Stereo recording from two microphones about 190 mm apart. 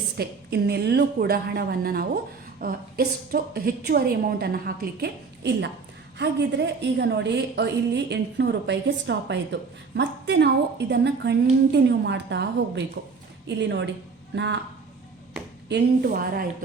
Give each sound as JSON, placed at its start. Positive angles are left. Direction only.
{"t": 0.2, "sound": "a woman's voice", "side_deg": -60}
{"t": 15.7, "sound": "a woman's voice", "side_deg": -50}